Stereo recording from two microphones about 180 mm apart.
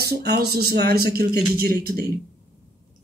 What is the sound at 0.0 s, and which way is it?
Speech, 65° right (ahead or behind).